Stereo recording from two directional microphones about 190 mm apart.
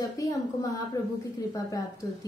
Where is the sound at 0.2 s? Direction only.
20° left (ahead or behind).